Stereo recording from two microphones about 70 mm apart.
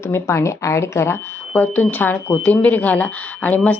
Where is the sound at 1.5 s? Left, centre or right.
Left.